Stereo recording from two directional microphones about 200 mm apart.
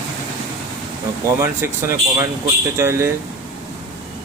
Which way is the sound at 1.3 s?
15° right (ahead or behind).